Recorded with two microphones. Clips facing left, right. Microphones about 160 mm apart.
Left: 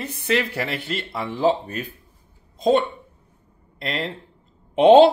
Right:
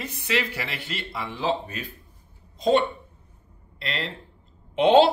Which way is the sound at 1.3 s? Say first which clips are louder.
Left 7 dB; 50° left (ahead or behind).